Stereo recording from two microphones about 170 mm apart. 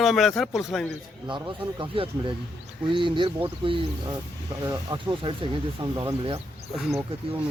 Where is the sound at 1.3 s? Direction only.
30° right (ahead or behind).